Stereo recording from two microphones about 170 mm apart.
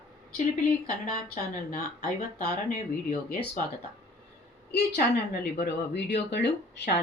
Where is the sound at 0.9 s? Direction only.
55° left (ahead or behind).